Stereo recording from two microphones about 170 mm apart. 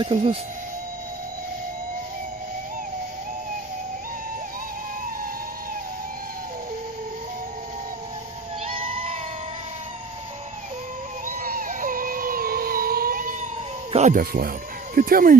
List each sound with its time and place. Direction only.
0.0 s speech: 35° right (ahead or behind)
8.6 s a sound: 35° right (ahead or behind)
11.2 s music: 55° right (ahead or behind)
13.9 s speech: 50° right (ahead or behind)